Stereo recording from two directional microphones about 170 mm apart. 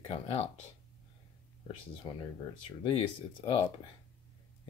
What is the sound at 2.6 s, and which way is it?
Speech, 30° left (ahead or behind).